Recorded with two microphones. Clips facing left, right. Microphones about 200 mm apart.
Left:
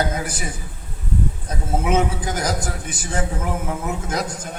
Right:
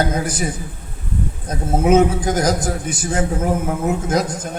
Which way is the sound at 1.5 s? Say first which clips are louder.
Right 8 dB; 40° right (ahead or behind).